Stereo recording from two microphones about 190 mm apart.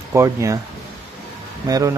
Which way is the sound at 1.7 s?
20° right (ahead or behind).